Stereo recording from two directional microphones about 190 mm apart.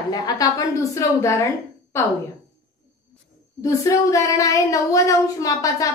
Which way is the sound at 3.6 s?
15° left (ahead or behind).